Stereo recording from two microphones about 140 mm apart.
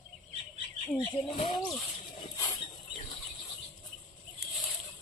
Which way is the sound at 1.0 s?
30° left (ahead or behind).